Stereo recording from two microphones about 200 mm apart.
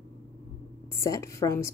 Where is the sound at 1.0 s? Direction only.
15° left (ahead or behind).